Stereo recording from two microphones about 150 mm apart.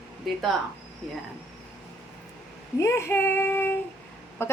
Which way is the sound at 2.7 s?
20° left (ahead or behind).